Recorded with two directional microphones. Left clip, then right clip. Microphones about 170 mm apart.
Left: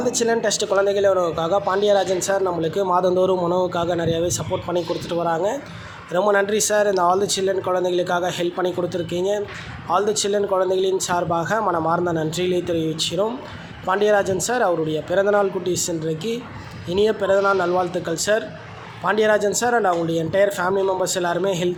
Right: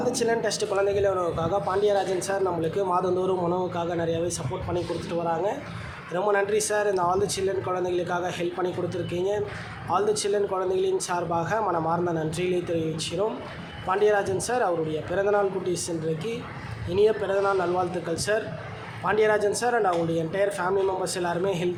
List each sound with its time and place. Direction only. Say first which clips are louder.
0.0 s a man's voice: left 5 dB; 30° left (ahead or behind)